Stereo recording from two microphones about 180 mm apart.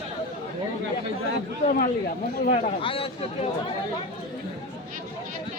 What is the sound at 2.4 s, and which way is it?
Speech, 35° left (ahead or behind).